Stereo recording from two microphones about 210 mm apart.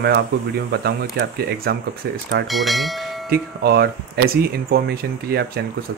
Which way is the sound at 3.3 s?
50° right (ahead or behind).